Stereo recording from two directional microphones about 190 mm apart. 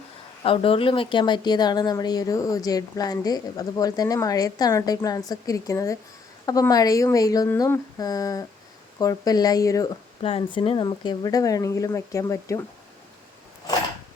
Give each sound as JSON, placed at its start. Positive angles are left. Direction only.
{"t": 0.4, "sound": "speech", "side_deg": 30}
{"t": 10.2, "sound": "speech", "side_deg": 30}